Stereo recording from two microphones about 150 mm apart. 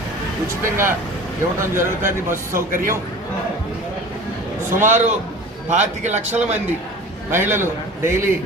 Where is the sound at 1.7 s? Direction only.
15° right (ahead or behind).